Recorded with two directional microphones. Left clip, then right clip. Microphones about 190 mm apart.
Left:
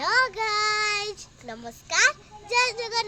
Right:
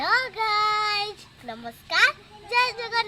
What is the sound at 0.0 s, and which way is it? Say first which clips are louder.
Speech: even; 30° left (ahead or behind).